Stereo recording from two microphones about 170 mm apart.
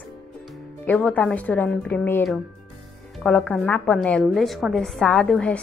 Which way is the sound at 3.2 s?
5° left (ahead or behind).